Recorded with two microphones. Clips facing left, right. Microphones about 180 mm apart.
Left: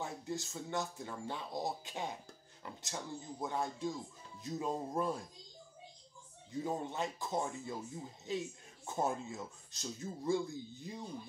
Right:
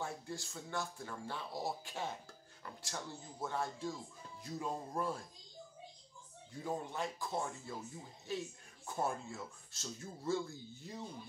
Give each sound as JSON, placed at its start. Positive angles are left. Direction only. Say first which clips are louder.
{"t": 0.0, "sound": "speech", "louder": "left 2 dB", "side_deg": 20}
{"t": 6.5, "sound": "speech", "louder": "left 3 dB", "side_deg": 20}